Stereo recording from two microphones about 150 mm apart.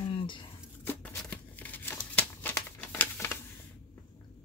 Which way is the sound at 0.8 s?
10° left (ahead or behind).